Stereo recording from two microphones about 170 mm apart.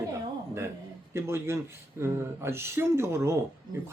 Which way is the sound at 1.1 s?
15° right (ahead or behind).